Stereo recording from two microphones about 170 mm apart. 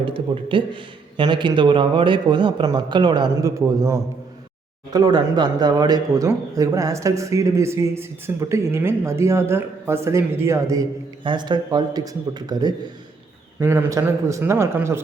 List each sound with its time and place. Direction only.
0.0 s a man's voice: 30° right (ahead or behind); by 15.0 s 15° right (ahead or behind)